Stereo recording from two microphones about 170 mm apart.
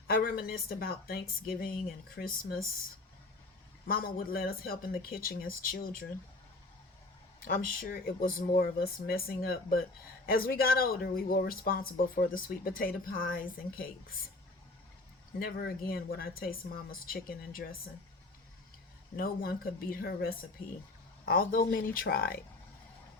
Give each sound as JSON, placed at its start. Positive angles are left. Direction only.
{"t": 0.1, "sound": "speech", "side_deg": 60}
{"t": 3.8, "sound": "speech", "side_deg": 60}
{"t": 7.3, "sound": "speech", "side_deg": 60}
{"t": 15.4, "sound": "speech", "side_deg": 65}
{"t": 19.1, "sound": "speech", "side_deg": 60}